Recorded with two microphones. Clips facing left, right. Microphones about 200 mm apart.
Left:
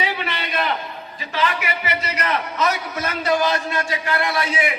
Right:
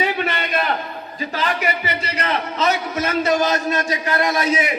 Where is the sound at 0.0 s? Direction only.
50° right (ahead or behind).